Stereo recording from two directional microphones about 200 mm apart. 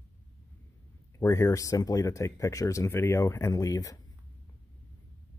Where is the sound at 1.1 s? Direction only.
15° left (ahead or behind).